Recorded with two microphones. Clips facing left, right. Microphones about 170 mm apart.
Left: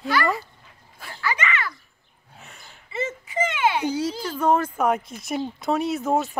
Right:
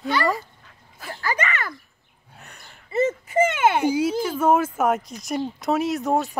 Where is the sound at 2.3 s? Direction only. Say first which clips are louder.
Even; centre (ahead or behind).